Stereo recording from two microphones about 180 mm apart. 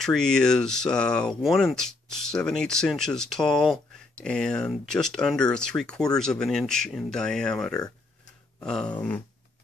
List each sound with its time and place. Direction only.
0.0 s speech: 5° left (ahead or behind)